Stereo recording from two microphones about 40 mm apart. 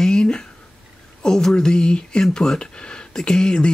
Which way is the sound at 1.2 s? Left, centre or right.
Centre.